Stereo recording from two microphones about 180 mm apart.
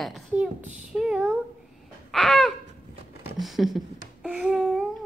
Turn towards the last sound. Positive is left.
turn(degrees=0)  # may be behind; listen again after turning